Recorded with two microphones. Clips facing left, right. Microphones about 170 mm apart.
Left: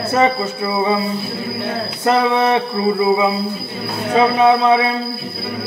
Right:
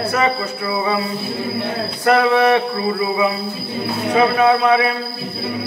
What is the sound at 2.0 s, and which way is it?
Music, 20° left (ahead or behind).